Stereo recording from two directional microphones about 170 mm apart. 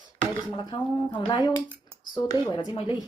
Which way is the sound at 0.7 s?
25° left (ahead or behind).